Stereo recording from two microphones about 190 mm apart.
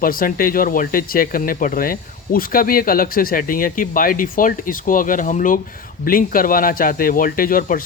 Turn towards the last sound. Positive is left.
turn(degrees=45)  # may be behind; listen again after turning